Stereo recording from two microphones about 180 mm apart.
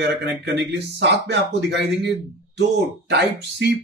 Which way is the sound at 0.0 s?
70° right (ahead or behind).